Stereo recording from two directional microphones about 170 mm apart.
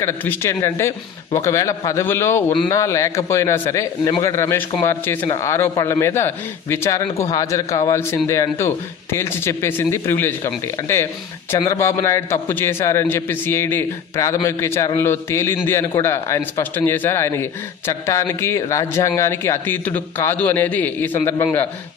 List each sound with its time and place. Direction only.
0.0 s speech: 15° left (ahead or behind)